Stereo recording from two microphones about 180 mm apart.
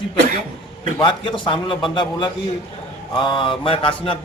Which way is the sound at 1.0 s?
30° left (ahead or behind).